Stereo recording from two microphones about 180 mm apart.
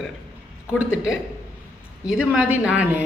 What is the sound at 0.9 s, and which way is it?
Speech, 90° left.